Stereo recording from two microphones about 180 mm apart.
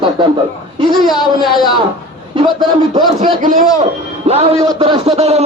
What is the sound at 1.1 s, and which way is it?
Speech, 25° left (ahead or behind).